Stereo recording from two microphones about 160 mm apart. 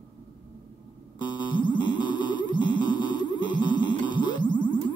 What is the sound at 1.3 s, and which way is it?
Music, 30° left (ahead or behind).